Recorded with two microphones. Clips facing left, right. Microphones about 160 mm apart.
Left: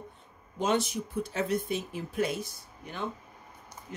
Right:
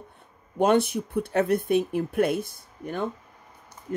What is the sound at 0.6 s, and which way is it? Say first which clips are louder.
Speech: right 7 dB; 60° right (ahead or behind).